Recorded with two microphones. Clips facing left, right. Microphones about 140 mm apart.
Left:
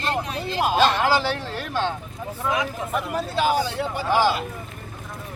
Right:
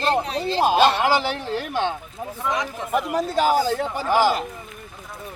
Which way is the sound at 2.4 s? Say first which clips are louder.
Left 1 dB; 5° left (ahead or behind).